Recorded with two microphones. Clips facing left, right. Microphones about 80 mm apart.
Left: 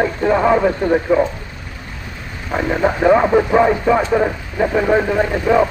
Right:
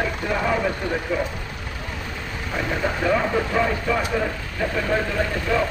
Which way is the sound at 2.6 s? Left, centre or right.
Left.